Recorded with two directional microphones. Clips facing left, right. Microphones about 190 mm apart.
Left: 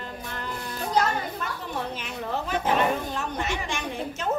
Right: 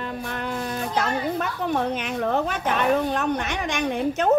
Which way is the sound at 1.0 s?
60° right (ahead or behind).